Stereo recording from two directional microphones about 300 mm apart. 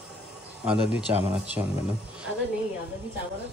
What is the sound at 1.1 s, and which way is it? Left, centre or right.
Speech, centre.